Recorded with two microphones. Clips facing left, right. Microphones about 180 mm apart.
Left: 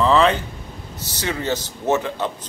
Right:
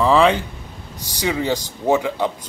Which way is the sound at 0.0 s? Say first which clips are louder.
Right 1 dB; 10° right (ahead or behind).